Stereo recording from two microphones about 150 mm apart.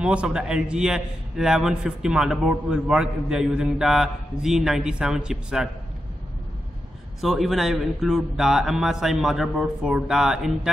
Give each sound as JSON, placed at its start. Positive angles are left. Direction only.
{"t": 0.0, "sound": "a man's voice", "side_deg": -5}
{"t": 7.2, "sound": "a man's voice", "side_deg": 0}